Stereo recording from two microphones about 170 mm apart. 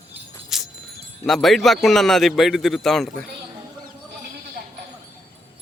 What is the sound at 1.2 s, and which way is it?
A man's voice, centre (ahead or behind).